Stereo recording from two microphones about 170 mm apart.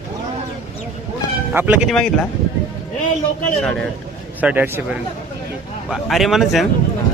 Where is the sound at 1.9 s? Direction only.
5° left (ahead or behind).